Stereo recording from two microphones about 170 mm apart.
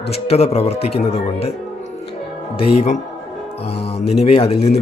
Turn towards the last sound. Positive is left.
turn(degrees=35)  # may be behind; listen again after turning